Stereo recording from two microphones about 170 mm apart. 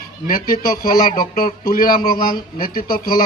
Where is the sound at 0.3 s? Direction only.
55° left (ahead or behind).